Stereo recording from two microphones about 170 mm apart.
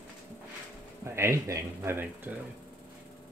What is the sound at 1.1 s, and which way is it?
Speech, 15° right (ahead or behind).